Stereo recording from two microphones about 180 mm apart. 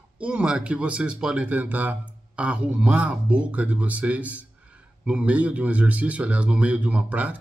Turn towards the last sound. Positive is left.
turn(degrees=-10)  # may be behind; listen again after turning